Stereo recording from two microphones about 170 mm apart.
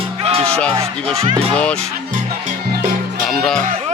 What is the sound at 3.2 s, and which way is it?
Music, 5° left (ahead or behind).